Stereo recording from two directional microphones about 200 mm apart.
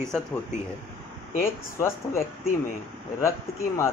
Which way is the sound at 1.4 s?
15° left (ahead or behind).